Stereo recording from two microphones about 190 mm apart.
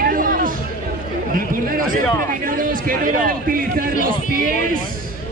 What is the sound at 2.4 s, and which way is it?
A man's voice, 45° right (ahead or behind).